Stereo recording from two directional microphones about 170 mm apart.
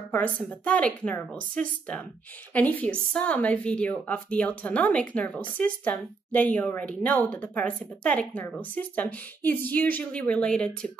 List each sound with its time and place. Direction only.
0.1 s a woman's voice: 10° left (ahead or behind)